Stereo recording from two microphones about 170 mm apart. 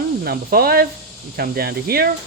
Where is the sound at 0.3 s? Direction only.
65° right (ahead or behind).